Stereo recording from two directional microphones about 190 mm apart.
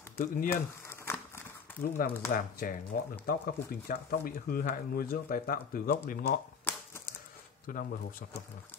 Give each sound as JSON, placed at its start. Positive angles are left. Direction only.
{"t": 0.5, "sound": "crumpling", "side_deg": 10}
{"t": 1.8, "sound": "speech", "side_deg": 50}
{"t": 6.7, "sound": "typewriter", "side_deg": 10}
{"t": 7.6, "sound": "speech", "side_deg": 45}